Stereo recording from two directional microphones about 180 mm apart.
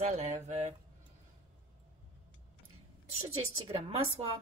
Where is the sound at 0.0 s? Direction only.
40° right (ahead or behind).